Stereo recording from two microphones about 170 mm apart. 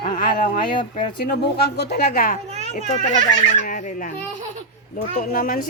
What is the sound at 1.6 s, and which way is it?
Speech, 75° left (ahead or behind).